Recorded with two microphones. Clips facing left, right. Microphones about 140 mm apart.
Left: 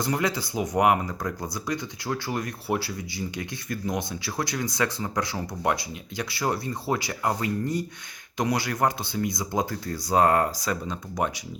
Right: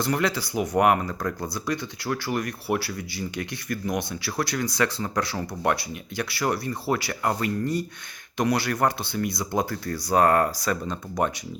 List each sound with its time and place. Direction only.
0.0 s speech: 20° left (ahead or behind)